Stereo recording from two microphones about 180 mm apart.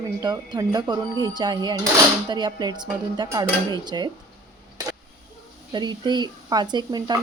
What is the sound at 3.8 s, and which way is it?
Speech, 25° right (ahead or behind).